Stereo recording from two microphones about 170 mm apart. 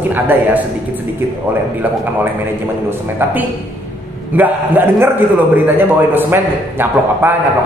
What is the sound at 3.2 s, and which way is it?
A man's voice, 10° right (ahead or behind).